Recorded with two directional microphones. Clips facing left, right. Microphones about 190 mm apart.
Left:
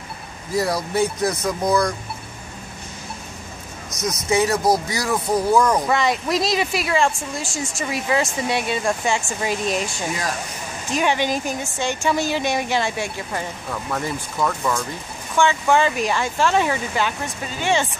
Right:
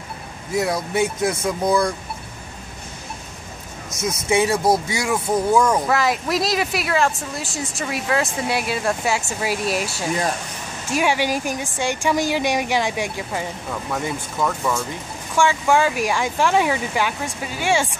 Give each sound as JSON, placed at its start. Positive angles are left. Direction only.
{"t": 0.7, "sound": "speech", "side_deg": -25}
{"t": 3.9, "sound": "speech", "side_deg": -25}
{"t": 5.0, "sound": "a woman's voice", "side_deg": -10}